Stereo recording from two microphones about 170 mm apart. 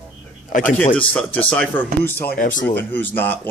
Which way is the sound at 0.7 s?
10° left (ahead or behind).